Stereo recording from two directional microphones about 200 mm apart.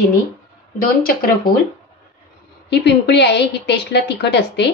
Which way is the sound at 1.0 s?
50° left (ahead or behind).